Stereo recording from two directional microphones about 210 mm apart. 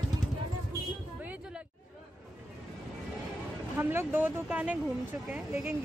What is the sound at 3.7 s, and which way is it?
Speech, 10° right (ahead or behind).